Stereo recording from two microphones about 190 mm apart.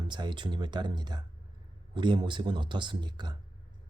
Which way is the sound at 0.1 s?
25° right (ahead or behind).